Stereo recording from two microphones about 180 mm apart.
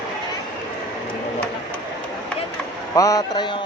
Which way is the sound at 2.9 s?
20° left (ahead or behind).